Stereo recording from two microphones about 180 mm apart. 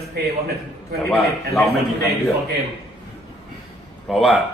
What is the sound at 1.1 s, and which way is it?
A man's voice, centre (ahead or behind).